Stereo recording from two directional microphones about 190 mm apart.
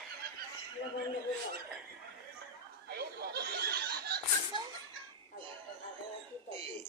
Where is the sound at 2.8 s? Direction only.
55° right (ahead or behind).